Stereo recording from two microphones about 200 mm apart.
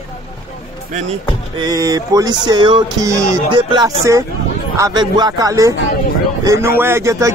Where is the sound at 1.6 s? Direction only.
20° right (ahead or behind).